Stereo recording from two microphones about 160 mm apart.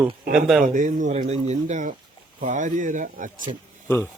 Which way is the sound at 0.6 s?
55° right (ahead or behind).